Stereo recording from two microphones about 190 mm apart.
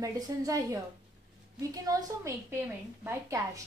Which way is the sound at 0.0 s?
20° right (ahead or behind).